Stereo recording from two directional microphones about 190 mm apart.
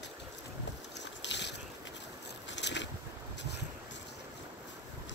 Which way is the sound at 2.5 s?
70° left (ahead or behind).